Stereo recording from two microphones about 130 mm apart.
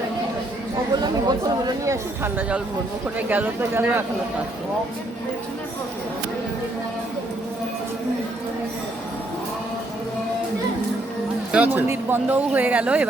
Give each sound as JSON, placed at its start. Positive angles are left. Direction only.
{"t": 0.9, "sound": "speech", "side_deg": -30}
{"t": 3.2, "sound": "speech", "side_deg": -15}
{"t": 11.5, "sound": "speech", "side_deg": -15}